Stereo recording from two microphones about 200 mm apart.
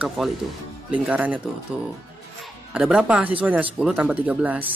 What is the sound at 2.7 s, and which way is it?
Speech, 5° right (ahead or behind).